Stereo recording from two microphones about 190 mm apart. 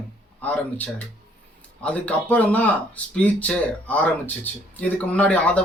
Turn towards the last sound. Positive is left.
turn(degrees=5)  # may be behind; listen again after turning